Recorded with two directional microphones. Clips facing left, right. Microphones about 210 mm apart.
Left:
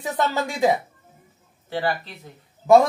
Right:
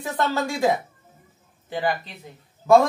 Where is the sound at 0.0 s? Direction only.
15° left (ahead or behind).